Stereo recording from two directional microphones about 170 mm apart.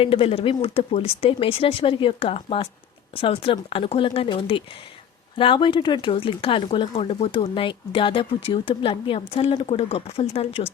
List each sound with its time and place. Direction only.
0.0 s speech: 35° left (ahead or behind)